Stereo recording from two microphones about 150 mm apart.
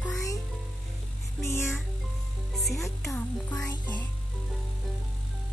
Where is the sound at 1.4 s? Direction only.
15° left (ahead or behind).